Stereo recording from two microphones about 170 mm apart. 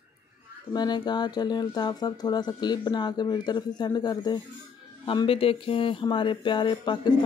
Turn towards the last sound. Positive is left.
turn(degrees=25)  # may be behind; listen again after turning